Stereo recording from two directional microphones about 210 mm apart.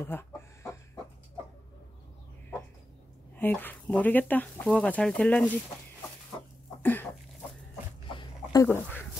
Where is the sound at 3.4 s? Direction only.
10° left (ahead or behind).